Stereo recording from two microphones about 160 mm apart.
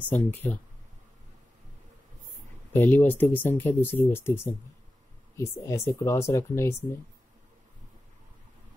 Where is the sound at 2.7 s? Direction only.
10° left (ahead or behind).